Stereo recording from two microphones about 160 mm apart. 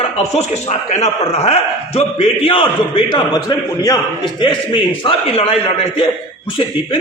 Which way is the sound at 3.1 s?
25° left (ahead or behind).